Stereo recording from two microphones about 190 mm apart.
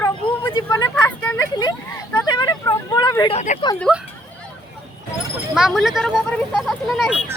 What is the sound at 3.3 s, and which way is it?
Speech, 40° left (ahead or behind).